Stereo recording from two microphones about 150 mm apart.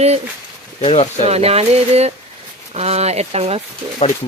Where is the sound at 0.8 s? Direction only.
40° left (ahead or behind).